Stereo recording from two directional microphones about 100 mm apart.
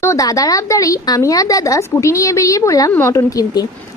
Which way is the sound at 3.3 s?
35° left (ahead or behind).